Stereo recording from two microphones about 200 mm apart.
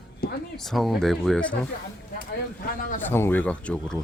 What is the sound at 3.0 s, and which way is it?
Speech, 10° left (ahead or behind).